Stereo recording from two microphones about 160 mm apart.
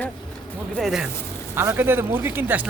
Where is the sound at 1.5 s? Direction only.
15° right (ahead or behind).